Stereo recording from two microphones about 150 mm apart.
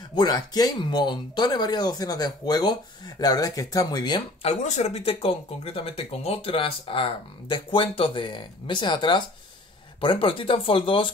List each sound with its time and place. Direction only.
0.1 s speech: 30° left (ahead or behind)
4.5 s speech: 50° left (ahead or behind)